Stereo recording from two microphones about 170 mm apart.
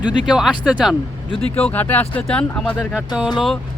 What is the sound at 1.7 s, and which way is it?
Speech, 10° left (ahead or behind).